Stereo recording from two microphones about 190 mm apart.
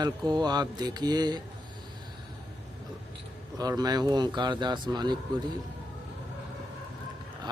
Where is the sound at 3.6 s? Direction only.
20° right (ahead or behind).